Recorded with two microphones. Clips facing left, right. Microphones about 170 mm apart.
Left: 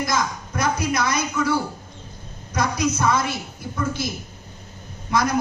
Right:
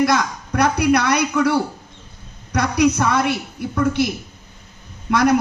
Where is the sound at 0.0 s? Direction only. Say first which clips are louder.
Right 6 dB; 65° right (ahead or behind).